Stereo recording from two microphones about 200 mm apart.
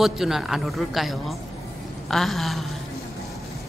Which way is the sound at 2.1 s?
Centre (ahead or behind).